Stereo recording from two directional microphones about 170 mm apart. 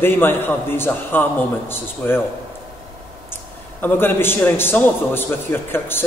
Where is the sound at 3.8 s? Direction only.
10° left (ahead or behind).